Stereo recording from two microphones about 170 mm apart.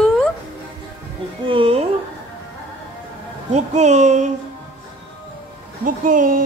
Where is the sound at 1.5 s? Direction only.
30° right (ahead or behind).